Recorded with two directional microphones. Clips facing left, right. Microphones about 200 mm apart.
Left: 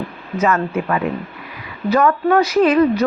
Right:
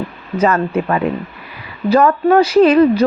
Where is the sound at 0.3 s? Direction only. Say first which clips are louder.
Right 3 dB; 35° right (ahead or behind).